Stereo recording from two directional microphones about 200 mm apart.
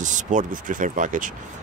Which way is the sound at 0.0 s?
40° right (ahead or behind).